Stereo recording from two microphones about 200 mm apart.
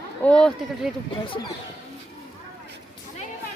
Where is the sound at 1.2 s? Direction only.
25° left (ahead or behind).